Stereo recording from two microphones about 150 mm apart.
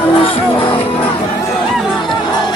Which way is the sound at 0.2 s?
35° left (ahead or behind).